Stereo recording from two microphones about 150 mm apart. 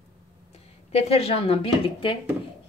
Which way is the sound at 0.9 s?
45° left (ahead or behind).